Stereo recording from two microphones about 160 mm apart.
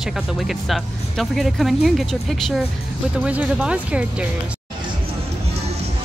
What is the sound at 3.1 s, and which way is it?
Speech, 10° right (ahead or behind).